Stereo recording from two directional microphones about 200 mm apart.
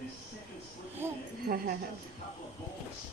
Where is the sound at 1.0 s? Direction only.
10° right (ahead or behind).